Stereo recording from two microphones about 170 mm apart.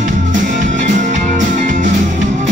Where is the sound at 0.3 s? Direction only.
50° right (ahead or behind).